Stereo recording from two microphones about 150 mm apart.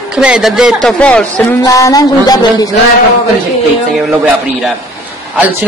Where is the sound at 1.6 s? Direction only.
25° left (ahead or behind).